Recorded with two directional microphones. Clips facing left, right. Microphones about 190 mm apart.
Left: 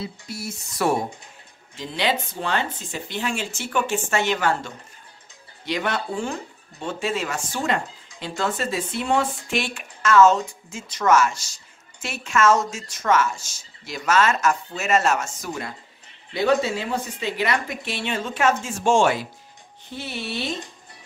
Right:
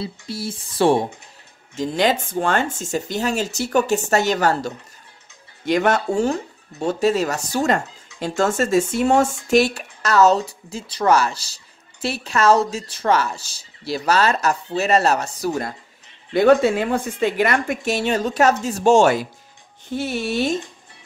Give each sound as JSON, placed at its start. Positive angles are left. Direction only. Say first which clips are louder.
{"t": 0.0, "sound": "speech", "louder": "right 4 dB", "side_deg": -30}
{"t": 1.8, "sound": "speech", "louder": "right 6 dB", "side_deg": -45}
{"t": 16.3, "sound": "speech", "louder": "right 7 dB", "side_deg": -55}